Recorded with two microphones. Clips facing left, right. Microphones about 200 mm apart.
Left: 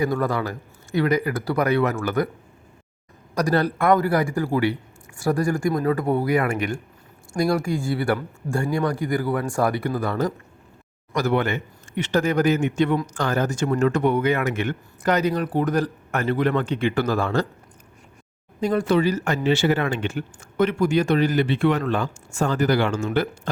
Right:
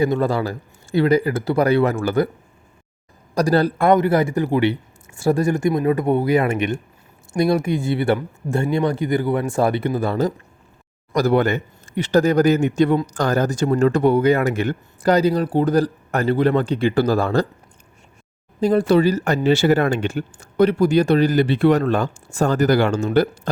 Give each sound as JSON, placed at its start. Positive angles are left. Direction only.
{"t": 0.0, "sound": "a man's voice", "side_deg": -25}
{"t": 3.3, "sound": "a man's voice", "side_deg": -30}
{"t": 11.1, "sound": "speech", "side_deg": -35}
{"t": 18.6, "sound": "speech", "side_deg": -35}